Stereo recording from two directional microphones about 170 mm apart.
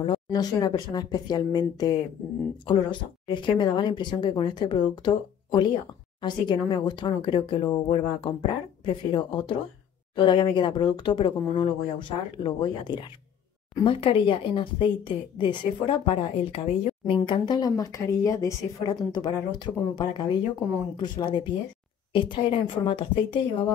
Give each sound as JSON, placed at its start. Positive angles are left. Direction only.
{"t": 0.0, "sound": "a woman's voice", "side_deg": 25}